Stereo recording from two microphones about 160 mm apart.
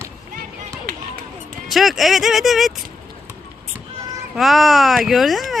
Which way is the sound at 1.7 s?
Centre (ahead or behind).